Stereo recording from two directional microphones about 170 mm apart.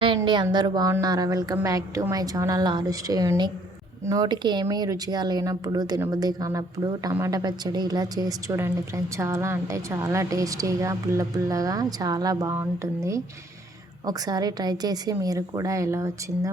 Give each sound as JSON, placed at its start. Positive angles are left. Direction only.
{"t": 0.5, "sound": "a woman's voice", "side_deg": -25}